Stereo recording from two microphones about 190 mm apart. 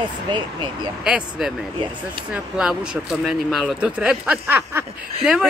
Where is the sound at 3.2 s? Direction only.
Centre (ahead or behind).